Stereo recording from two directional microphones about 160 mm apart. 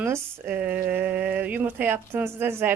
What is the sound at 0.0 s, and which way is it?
Speech, 10° right (ahead or behind).